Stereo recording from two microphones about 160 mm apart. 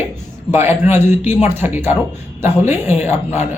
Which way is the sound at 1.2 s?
45° left (ahead or behind).